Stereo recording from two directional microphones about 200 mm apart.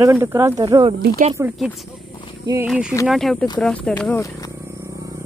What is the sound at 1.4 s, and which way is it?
Speech, 10° right (ahead or behind).